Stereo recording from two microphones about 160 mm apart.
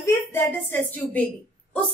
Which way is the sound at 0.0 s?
15° left (ahead or behind).